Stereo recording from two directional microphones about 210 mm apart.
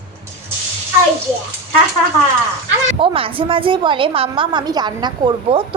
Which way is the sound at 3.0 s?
25° right (ahead or behind).